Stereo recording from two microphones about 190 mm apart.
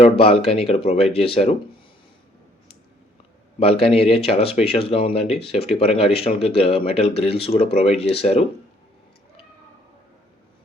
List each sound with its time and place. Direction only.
0.0 s speech: 30° left (ahead or behind)
3.6 s speech: 30° left (ahead or behind)